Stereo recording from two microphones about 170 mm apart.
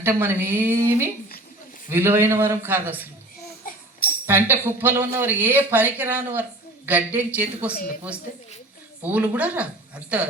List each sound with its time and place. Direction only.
0.0 s speech: 15° right (ahead or behind)
3.6 s a sound: 55° left (ahead or behind)
4.3 s speech: 10° right (ahead or behind)
9.0 s speech: 10° right (ahead or behind)